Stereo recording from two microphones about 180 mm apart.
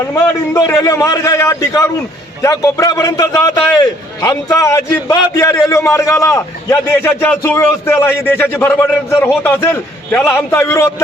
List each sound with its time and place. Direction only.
0.1 s a man's voice: 15° left (ahead or behind)